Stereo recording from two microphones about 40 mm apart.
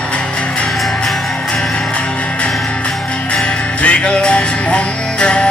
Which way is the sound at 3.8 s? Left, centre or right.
Left.